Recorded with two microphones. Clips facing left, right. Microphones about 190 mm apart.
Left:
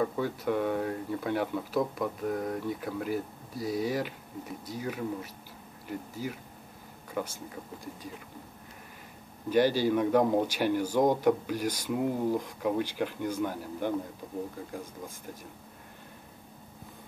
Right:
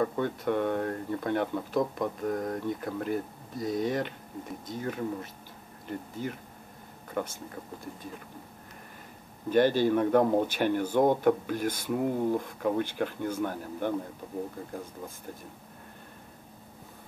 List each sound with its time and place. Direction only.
0.0 s speech: 5° left (ahead or behind)
9.5 s speech: 10° left (ahead or behind)
11.5 s speech: 55° right (ahead or behind)
11.8 s speech: 5° left (ahead or behind)